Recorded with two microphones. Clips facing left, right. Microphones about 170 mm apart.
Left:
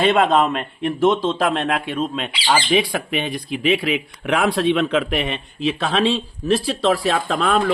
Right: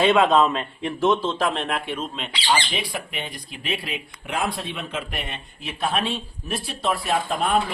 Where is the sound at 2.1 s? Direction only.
80° left.